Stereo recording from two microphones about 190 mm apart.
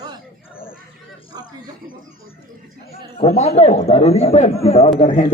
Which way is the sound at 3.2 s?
35° left (ahead or behind).